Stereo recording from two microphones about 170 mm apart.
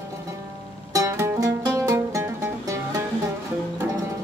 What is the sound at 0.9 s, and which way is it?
Music, 15° right (ahead or behind).